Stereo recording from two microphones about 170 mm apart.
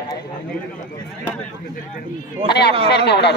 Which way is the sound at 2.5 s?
70° left (ahead or behind).